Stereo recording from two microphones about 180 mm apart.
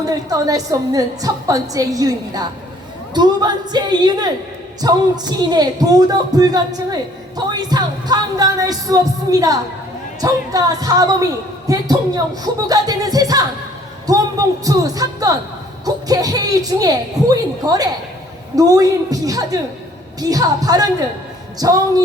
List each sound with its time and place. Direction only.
0.0 s a man's voice: 20° right (ahead or behind)